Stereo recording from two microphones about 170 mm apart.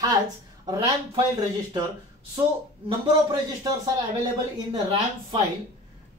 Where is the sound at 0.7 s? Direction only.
30° right (ahead or behind).